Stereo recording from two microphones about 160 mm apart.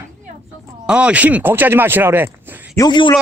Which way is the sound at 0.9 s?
5° right (ahead or behind).